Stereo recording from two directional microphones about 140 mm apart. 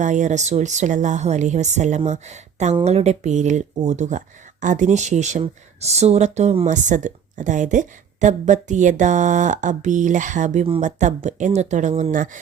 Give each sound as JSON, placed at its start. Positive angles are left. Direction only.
{"t": 0.0, "sound": "a woman's voice", "side_deg": -60}
{"t": 6.7, "sound": "a woman's voice", "side_deg": -60}